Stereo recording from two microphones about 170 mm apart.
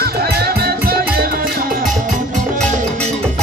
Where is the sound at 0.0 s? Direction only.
65° right (ahead or behind).